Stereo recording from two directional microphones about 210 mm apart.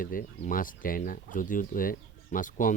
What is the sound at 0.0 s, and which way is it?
Speech, 40° left (ahead or behind).